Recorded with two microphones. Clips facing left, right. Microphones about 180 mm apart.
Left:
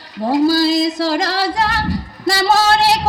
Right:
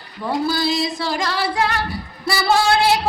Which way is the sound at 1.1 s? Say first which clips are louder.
Left 4 dB; 90° left.